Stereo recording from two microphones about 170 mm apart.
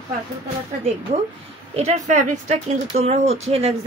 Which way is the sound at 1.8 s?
40° right (ahead or behind).